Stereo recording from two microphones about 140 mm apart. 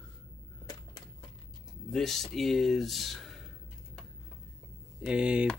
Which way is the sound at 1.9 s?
Centre (ahead or behind).